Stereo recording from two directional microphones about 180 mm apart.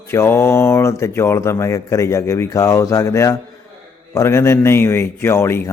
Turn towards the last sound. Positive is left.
turn(degrees=15)  # may be behind; listen again after turning